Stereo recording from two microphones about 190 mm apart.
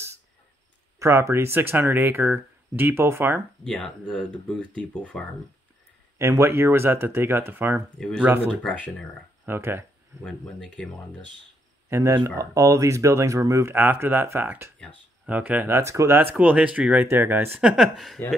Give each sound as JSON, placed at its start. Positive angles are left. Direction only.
{"t": 0.9, "sound": "speech", "side_deg": -15}
{"t": 3.6, "sound": "speech", "side_deg": 5}
{"t": 6.1, "sound": "speech", "side_deg": -15}
{"t": 9.5, "sound": "speech", "side_deg": -10}
{"t": 10.2, "sound": "speech", "side_deg": 5}
{"t": 11.9, "sound": "speech", "side_deg": -15}